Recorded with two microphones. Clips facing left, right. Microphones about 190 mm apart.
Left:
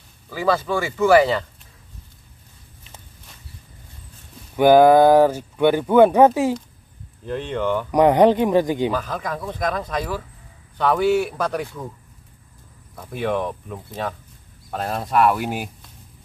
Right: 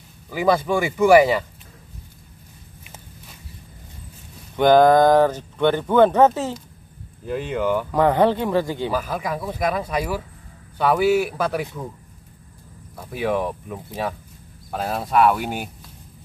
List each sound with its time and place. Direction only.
0.3 s speech: 15° right (ahead or behind)
4.6 s speech: 10° left (ahead or behind)
7.2 s speech: 5° right (ahead or behind)
7.9 s speech: 15° left (ahead or behind)
8.9 s speech: 10° right (ahead or behind)
12.9 s speech: 5° right (ahead or behind)